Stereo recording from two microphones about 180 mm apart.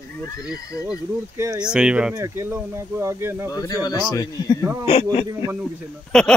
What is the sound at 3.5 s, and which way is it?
Speech, 20° left (ahead or behind).